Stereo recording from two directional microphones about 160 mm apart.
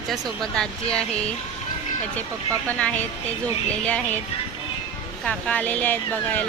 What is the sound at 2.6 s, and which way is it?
Speech, 10° left (ahead or behind).